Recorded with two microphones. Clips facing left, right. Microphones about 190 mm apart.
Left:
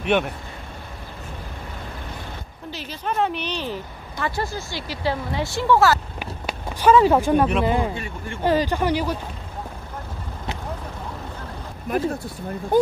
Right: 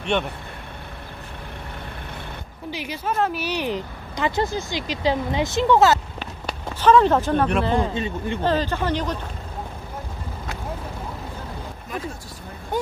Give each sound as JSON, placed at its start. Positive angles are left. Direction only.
{"t": 2.7, "sound": "speech", "side_deg": -10}
{"t": 6.1, "sound": "speech", "side_deg": 10}
{"t": 7.9, "sound": "speech", "side_deg": -20}
{"t": 8.4, "sound": "speech", "side_deg": 10}